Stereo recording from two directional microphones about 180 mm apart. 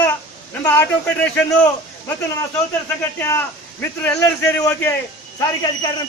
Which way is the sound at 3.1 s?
10° left (ahead or behind).